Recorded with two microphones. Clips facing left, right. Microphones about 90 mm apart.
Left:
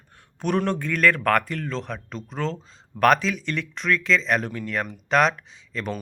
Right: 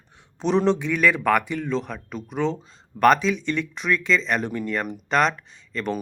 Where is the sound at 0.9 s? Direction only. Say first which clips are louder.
Right 1 dB; 5° right (ahead or behind).